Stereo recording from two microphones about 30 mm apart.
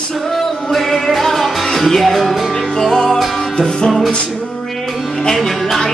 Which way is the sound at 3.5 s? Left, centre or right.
Left.